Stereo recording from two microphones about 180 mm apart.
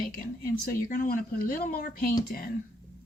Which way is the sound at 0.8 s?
50° left (ahead or behind).